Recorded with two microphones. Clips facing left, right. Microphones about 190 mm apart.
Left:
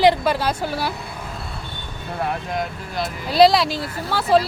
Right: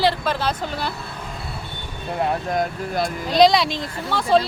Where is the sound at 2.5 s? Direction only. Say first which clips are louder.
Right 4 dB; 45° right (ahead or behind).